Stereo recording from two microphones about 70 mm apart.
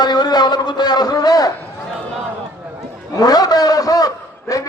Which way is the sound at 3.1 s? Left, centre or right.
Left.